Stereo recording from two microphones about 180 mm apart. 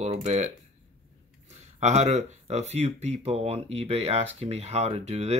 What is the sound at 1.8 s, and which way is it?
Speech, 40° right (ahead or behind).